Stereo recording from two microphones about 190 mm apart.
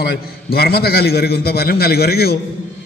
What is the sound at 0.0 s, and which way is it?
A man's voice, 55° left (ahead or behind).